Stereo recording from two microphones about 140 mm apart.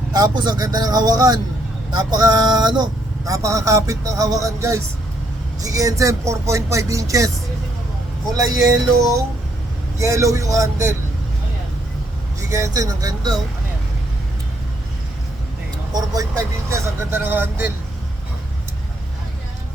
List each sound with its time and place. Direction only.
0.1 s speech: 30° right (ahead or behind)
8.4 s speech: 25° right (ahead or behind)
10.0 s speech: 20° right (ahead or behind)
12.4 s speech: 20° right (ahead or behind)
15.9 s speech: 25° right (ahead or behind)